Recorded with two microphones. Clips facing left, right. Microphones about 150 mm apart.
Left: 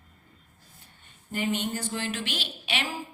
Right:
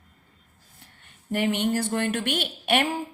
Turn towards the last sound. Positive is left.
turn(degrees=-55)  # may be behind; listen again after turning